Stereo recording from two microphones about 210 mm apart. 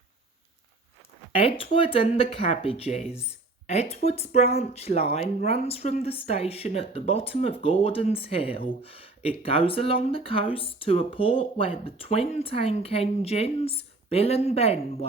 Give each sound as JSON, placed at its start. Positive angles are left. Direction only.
{"t": 1.3, "sound": "speech", "side_deg": 25}